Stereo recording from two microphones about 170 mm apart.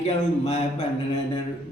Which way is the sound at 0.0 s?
40° left (ahead or behind).